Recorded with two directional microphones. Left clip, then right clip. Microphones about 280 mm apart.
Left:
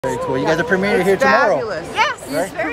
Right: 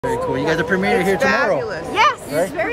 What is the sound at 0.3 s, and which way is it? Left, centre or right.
Speech, centre.